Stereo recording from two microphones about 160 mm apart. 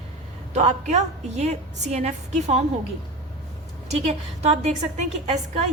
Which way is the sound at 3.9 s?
40° right (ahead or behind).